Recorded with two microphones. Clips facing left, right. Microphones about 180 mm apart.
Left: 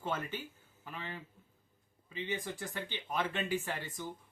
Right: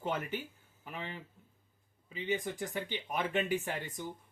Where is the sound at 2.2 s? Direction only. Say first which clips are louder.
Right 5 dB; 20° right (ahead or behind).